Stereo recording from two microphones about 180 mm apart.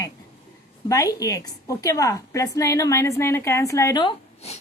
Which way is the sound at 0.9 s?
20° left (ahead or behind).